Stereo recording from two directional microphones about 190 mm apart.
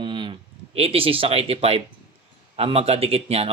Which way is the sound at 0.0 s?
25° right (ahead or behind).